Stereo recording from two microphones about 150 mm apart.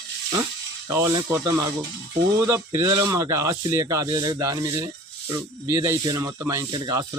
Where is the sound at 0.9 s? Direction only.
20° right (ahead or behind).